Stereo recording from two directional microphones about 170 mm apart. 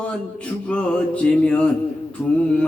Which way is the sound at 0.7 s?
5° left (ahead or behind).